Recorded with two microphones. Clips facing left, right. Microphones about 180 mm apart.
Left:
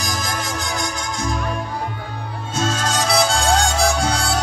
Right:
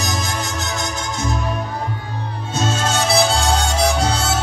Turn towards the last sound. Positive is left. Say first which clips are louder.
# right 1 dB
turn(degrees=-25)  # may be behind; listen again after turning